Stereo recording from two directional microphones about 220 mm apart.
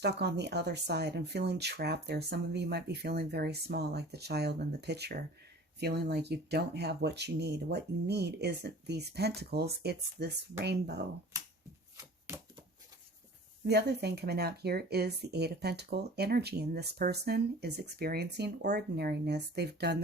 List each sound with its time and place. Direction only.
0.0 s a woman's voice: 50° right (ahead or behind)
11.9 s a sound: 15° right (ahead or behind)
13.7 s a woman's voice: 50° right (ahead or behind)